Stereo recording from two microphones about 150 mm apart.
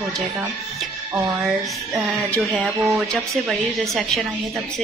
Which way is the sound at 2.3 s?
5° left (ahead or behind).